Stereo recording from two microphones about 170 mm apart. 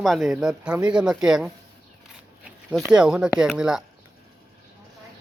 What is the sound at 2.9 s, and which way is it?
Speech, 5° right (ahead or behind).